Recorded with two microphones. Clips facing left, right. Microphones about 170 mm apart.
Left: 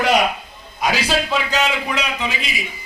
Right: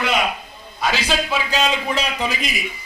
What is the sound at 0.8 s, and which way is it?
Speech, 10° left (ahead or behind).